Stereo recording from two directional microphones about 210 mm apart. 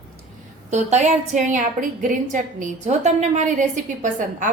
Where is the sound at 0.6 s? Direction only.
35° right (ahead or behind).